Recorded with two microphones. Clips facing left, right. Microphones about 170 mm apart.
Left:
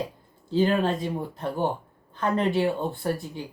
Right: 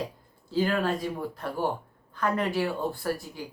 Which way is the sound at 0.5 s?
25° left (ahead or behind).